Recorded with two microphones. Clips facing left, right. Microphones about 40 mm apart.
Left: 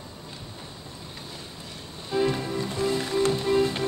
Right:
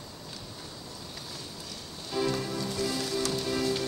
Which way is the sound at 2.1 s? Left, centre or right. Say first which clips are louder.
Left 5 dB; left.